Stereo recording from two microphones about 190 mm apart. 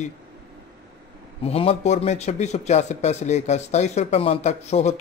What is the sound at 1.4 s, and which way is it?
A man's voice, 30° left (ahead or behind).